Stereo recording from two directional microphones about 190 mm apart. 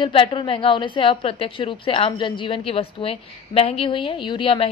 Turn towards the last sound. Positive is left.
turn(degrees=30)  # may be behind; listen again after turning